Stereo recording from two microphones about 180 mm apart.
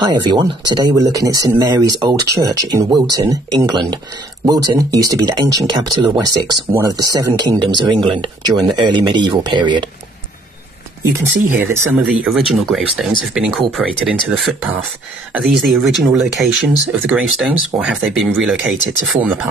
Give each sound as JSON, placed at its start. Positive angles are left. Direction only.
{"t": 0.0, "sound": "speech", "side_deg": -25}
{"t": 12.0, "sound": "speech", "side_deg": -5}